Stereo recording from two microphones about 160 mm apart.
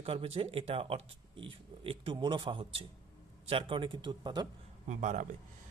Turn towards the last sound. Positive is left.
turn(degrees=-50)  # may be behind; listen again after turning